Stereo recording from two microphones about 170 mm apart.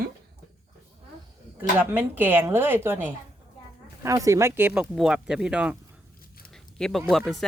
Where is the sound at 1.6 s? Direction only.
10° right (ahead or behind).